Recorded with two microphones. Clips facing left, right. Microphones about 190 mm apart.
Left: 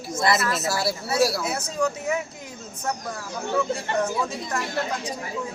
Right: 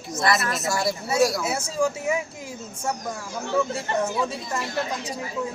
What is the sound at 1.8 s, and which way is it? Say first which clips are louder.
Speech: right 1 dB; 10° right (ahead or behind).